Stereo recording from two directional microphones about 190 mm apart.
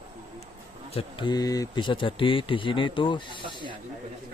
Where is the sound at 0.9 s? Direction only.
30° left (ahead or behind).